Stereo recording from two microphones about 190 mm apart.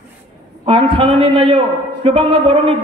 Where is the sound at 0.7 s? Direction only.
30° right (ahead or behind).